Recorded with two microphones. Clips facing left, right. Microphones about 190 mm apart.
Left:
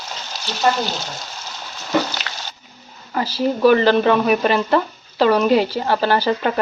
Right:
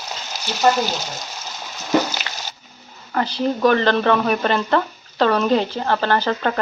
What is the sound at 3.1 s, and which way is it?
Speech, 5° left (ahead or behind).